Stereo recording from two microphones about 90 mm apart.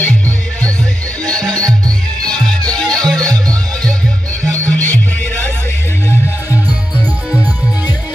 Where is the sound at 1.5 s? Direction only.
45° right (ahead or behind).